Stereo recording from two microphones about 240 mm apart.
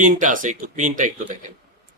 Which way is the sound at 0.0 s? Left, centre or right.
Right.